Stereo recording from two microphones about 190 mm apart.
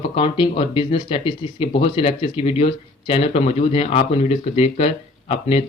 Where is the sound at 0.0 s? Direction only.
30° left (ahead or behind).